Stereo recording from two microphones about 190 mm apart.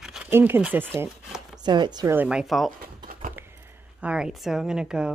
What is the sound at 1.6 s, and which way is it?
Speech, 25° right (ahead or behind).